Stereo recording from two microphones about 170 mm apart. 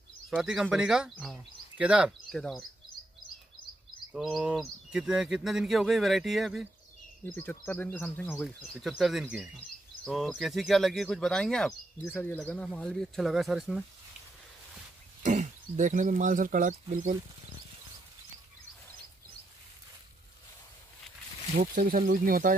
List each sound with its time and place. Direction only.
0.3 s speech: centre (ahead or behind)
4.1 s speech: centre (ahead or behind)
7.2 s speech: 10° left (ahead or behind)
8.7 s speech: centre (ahead or behind)
15.2 s speech: 45° right (ahead or behind)
21.5 s speech: 55° right (ahead or behind)